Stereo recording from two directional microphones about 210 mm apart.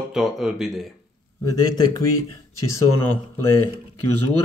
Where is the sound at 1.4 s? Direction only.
20° left (ahead or behind).